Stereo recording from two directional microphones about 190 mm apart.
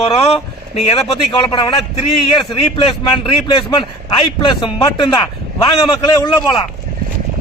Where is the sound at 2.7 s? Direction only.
25° left (ahead or behind).